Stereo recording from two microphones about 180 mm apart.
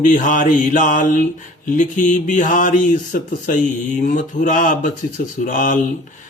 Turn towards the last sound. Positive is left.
turn(degrees=50)  # may be behind; listen again after turning